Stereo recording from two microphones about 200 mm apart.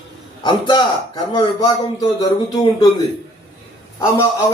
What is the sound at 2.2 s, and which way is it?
Speech, 20° left (ahead or behind).